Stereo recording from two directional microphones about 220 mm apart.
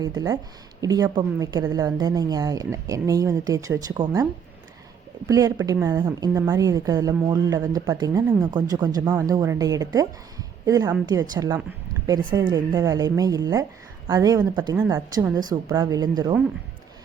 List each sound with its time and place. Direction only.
0.0 s a woman's voice: 15° right (ahead or behind)
5.3 s a woman's voice: 15° right (ahead or behind)